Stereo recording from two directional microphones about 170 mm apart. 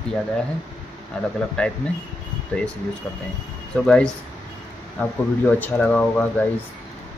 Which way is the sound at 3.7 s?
5° left (ahead or behind).